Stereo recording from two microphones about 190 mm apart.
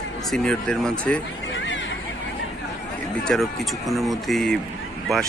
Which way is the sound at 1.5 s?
80° left.